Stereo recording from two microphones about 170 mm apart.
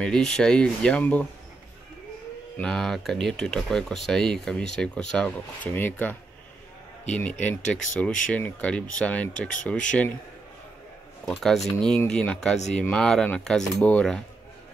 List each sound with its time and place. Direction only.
0.0 s speech: 5° left (ahead or behind)
2.5 s speech: 5° left (ahead or behind)
11.2 s speech: centre (ahead or behind)